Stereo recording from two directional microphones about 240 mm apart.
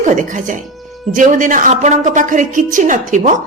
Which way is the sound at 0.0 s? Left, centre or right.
Right.